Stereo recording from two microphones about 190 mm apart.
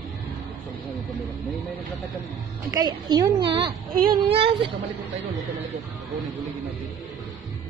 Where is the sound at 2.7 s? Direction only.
20° right (ahead or behind).